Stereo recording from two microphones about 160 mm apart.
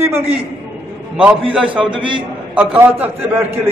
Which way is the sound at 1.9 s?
30° right (ahead or behind).